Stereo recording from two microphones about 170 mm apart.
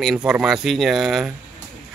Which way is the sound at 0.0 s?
Centre (ahead or behind).